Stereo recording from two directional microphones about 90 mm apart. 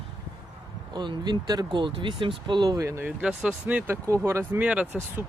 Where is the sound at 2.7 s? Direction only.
35° right (ahead or behind).